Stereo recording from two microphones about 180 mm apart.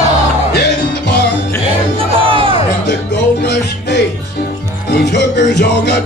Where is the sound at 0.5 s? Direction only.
70° left (ahead or behind).